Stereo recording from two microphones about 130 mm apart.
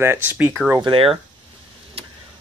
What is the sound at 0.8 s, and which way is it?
Speech, 45° right (ahead or behind).